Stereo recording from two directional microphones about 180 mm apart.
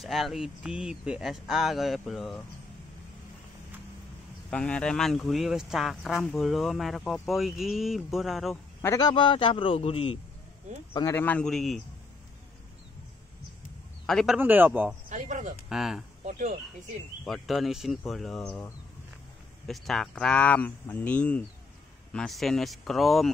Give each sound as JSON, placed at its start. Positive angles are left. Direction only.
{"t": 0.0, "sound": "speech", "side_deg": 0}
{"t": 4.5, "sound": "speech", "side_deg": 5}
{"t": 8.8, "sound": "a man's voice", "side_deg": 20}
{"t": 11.1, "sound": "speech", "side_deg": 5}
{"t": 14.0, "sound": "speech", "side_deg": 0}
{"t": 15.0, "sound": "speech", "side_deg": -45}
{"t": 15.7, "sound": "speech", "side_deg": -5}
{"t": 16.3, "sound": "speech", "side_deg": -45}
{"t": 17.2, "sound": "speech", "side_deg": 0}
{"t": 19.7, "sound": "speech", "side_deg": 0}